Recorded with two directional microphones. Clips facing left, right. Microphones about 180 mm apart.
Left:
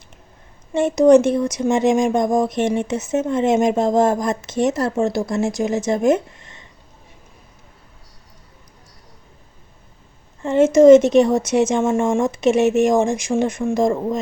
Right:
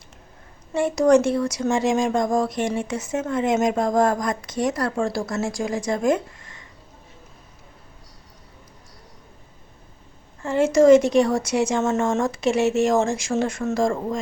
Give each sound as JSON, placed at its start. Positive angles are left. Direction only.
{"t": 0.7, "sound": "speech", "side_deg": 20}
{"t": 10.4, "sound": "speech", "side_deg": 20}